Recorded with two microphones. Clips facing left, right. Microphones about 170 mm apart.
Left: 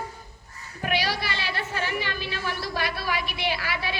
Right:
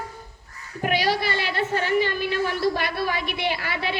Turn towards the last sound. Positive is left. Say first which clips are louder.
# right 2 dB
turn(degrees=-55)  # may be behind; listen again after turning